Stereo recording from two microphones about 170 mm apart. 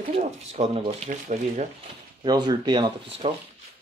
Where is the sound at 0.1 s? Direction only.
40° right (ahead or behind).